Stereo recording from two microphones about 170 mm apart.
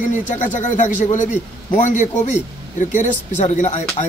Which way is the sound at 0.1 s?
45° left (ahead or behind).